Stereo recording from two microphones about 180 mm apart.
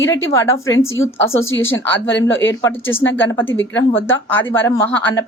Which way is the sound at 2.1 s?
90° left.